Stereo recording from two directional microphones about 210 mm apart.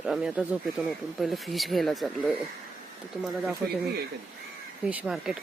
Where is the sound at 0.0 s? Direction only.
Centre (ahead or behind).